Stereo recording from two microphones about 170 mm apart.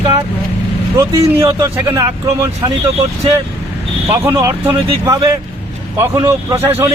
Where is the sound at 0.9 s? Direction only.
15° right (ahead or behind).